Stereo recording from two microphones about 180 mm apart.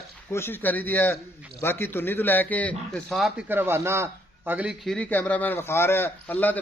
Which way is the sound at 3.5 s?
10° right (ahead or behind).